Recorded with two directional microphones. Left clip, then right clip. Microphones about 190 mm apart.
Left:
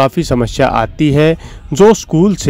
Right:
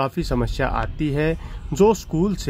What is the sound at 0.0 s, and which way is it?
Speech, 30° left (ahead or behind).